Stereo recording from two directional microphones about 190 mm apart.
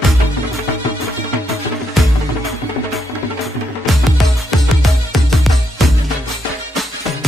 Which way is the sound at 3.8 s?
Centre (ahead or behind).